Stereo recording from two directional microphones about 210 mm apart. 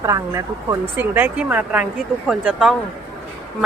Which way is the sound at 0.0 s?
15° right (ahead or behind).